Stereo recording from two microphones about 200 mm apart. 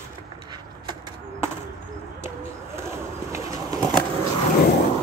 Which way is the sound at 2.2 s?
15° right (ahead or behind).